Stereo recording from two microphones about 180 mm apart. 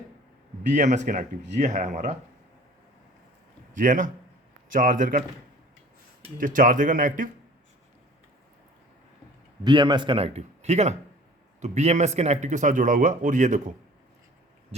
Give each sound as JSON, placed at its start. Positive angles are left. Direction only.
{"t": 0.7, "sound": "a man's voice", "side_deg": -40}
{"t": 3.8, "sound": "a man's voice", "side_deg": -45}
{"t": 6.4, "sound": "a man's voice", "side_deg": -50}
{"t": 9.6, "sound": "a man's voice", "side_deg": -25}
{"t": 14.7, "sound": "a sound", "side_deg": -35}